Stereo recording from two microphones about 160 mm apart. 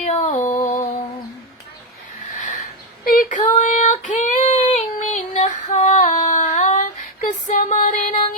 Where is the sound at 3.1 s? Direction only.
60° left (ahead or behind).